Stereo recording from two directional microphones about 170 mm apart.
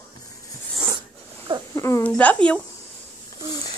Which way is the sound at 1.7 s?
15° left (ahead or behind).